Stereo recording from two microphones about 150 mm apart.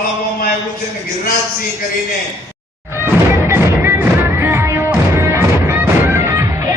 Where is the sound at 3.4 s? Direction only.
15° right (ahead or behind).